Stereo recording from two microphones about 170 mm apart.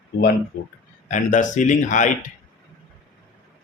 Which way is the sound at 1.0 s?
45° left (ahead or behind).